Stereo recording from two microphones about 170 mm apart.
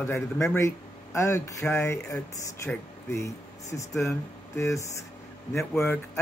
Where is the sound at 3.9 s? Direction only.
Centre (ahead or behind).